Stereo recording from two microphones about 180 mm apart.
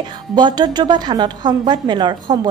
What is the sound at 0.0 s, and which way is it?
A woman's voice, 25° right (ahead or behind).